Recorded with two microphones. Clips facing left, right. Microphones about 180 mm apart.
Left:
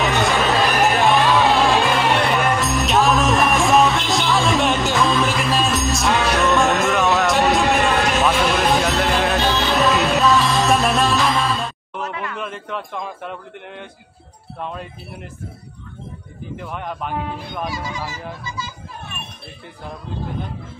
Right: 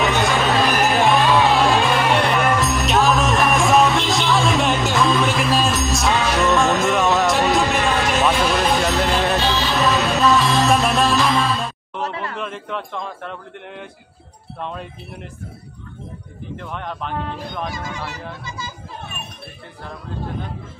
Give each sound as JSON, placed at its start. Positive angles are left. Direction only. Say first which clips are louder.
{"t": 0.0, "sound": "music", "louder": "even", "side_deg": 0}
{"t": 12.0, "sound": "a sound", "louder": "right 1 dB", "side_deg": -35}
{"t": 12.4, "sound": "a man's voice", "louder": "right 1 dB", "side_deg": 0}
{"t": 16.5, "sound": "speech", "louder": "left 1 dB", "side_deg": 5}
{"t": 17.8, "sound": "speech", "louder": "left 1 dB", "side_deg": -65}